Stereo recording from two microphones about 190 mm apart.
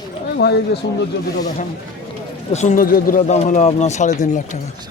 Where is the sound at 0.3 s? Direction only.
60° left (ahead or behind).